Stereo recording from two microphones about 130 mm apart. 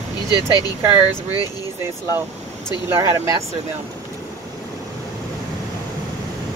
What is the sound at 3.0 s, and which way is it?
Speech, 20° right (ahead or behind).